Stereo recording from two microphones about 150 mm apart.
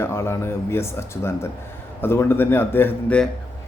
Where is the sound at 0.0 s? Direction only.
15° left (ahead or behind).